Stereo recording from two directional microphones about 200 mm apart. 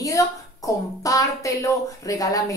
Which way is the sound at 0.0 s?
15° left (ahead or behind).